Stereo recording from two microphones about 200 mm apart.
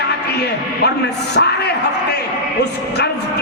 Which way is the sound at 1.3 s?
55° left (ahead or behind).